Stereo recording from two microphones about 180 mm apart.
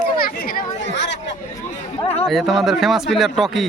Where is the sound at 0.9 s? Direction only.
75° left (ahead or behind).